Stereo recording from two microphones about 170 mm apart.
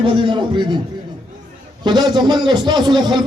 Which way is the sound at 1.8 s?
25° right (ahead or behind).